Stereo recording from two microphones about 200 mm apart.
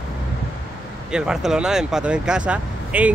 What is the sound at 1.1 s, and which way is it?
Speech, 5° right (ahead or behind).